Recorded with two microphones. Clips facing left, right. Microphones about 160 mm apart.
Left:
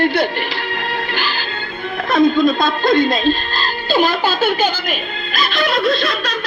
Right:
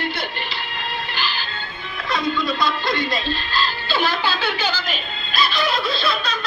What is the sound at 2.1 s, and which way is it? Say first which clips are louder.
Speech: left 10 dB; 50° left (ahead or behind).